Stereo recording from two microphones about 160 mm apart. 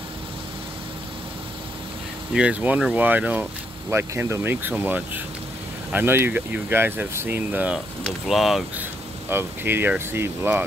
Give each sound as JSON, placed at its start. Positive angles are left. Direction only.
{"t": 2.3, "sound": "speech", "side_deg": -10}
{"t": 9.3, "sound": "speech", "side_deg": -15}